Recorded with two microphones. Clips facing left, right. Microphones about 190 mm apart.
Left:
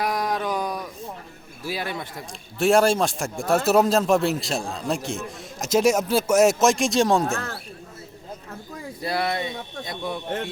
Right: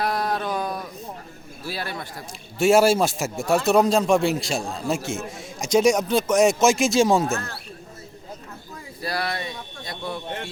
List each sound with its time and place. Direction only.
0.0 s dog: 15° left (ahead or behind)
1.6 s a man's voice: 15° left (ahead or behind)
2.6 s a man's voice: 5° right (ahead or behind)
9.0 s speech: 20° left (ahead or behind)